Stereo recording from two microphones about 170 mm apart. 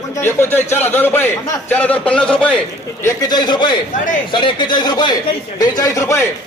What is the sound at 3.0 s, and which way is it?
A man's voice, 20° left (ahead or behind).